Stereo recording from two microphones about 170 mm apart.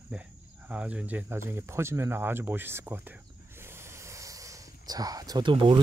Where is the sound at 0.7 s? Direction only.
5° right (ahead or behind).